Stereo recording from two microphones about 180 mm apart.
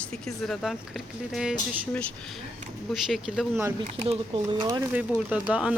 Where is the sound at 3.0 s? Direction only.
Centre (ahead or behind).